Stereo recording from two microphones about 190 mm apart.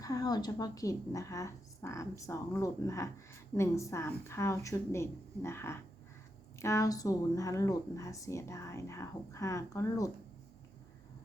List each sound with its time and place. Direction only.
0.0 s speech: 20° left (ahead or behind)